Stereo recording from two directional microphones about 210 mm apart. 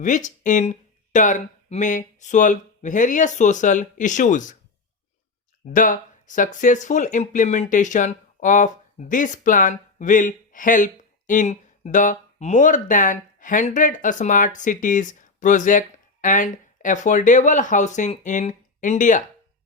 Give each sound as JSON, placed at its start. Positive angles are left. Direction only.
{"t": 0.0, "sound": "speech", "side_deg": 35}
{"t": 5.7, "sound": "speech", "side_deg": 40}